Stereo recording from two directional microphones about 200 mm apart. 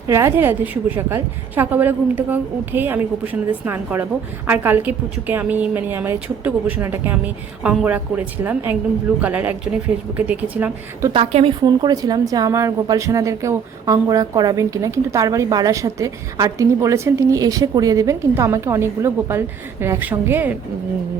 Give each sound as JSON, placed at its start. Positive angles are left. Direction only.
{"t": 0.1, "sound": "speech", "side_deg": -15}
{"t": 11.1, "sound": "a woman's voice", "side_deg": -30}
{"t": 11.6, "sound": "speech", "side_deg": -20}